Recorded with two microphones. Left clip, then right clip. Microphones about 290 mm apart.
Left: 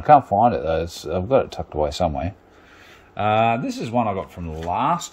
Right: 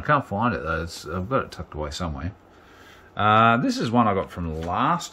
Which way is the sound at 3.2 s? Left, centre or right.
Centre.